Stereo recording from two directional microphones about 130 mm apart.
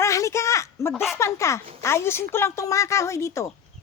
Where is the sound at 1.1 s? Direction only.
20° left (ahead or behind).